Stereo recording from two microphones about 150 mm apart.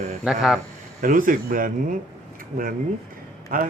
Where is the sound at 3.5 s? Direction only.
65° right (ahead or behind).